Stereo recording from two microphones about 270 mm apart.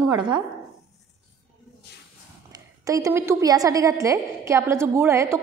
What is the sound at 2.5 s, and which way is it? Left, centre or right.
A woman's voice, centre.